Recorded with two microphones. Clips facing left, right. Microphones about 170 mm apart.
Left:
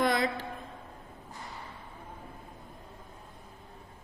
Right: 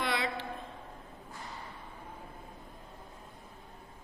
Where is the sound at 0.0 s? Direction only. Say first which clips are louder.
Left 6 dB; 45° left (ahead or behind).